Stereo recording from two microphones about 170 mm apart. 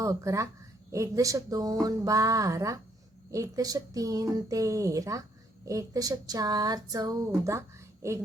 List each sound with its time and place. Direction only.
0.0 s speech: 20° right (ahead or behind)